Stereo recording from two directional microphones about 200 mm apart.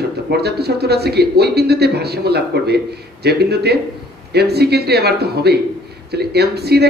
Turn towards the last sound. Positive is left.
turn(degrees=-55)  # may be behind; listen again after turning